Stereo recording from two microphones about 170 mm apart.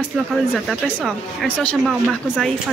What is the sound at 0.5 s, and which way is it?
Speech, centre (ahead or behind).